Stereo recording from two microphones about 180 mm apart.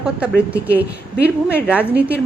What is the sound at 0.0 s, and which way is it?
A woman's voice, 5° right (ahead or behind).